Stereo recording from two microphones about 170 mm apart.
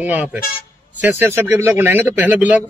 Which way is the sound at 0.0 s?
10° right (ahead or behind).